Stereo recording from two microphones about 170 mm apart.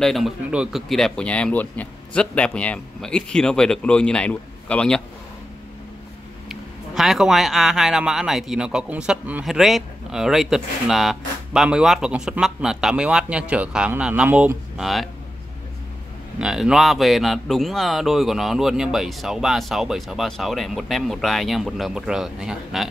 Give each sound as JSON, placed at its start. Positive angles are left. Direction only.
{"t": 0.0, "sound": "speech", "side_deg": 0}
{"t": 6.5, "sound": "speech", "side_deg": 0}
{"t": 16.3, "sound": "speech", "side_deg": -5}